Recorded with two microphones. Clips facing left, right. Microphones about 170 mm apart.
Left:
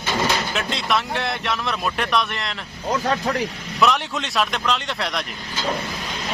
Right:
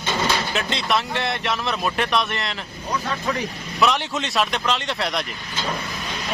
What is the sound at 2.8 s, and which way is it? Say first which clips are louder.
Speech: left 4 dB; 50° left (ahead or behind).